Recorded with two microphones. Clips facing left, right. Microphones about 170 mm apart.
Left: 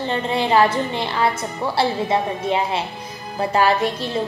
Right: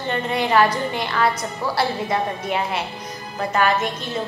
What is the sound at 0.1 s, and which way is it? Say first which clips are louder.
A woman's voice: left 1 dB; 30° left (ahead or behind).